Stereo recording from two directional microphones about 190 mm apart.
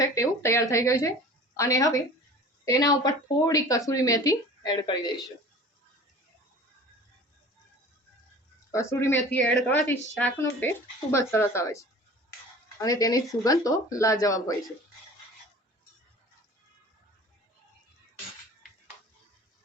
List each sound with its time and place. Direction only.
0.0 s a woman's voice: 15° left (ahead or behind)
8.7 s a woman's voice: 15° left (ahead or behind)